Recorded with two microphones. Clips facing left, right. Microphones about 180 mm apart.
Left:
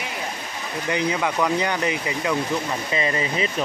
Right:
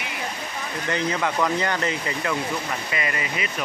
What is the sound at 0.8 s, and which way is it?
Speech, 15° left (ahead or behind).